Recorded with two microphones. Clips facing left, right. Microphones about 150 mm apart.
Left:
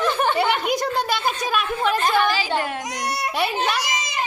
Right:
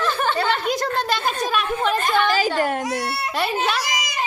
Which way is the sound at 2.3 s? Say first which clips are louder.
Right 3 dB; 45° right (ahead or behind).